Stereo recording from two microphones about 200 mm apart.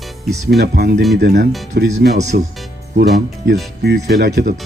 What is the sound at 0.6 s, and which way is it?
Speech, 55° right (ahead or behind).